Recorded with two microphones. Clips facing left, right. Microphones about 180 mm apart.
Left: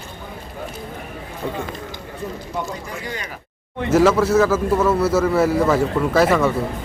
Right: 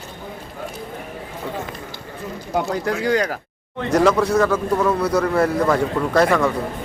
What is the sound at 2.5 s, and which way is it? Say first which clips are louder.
Speech: right 11 dB; 75° right (ahead or behind).